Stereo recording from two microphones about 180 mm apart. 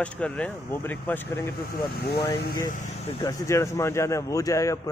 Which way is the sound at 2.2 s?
20° left (ahead or behind).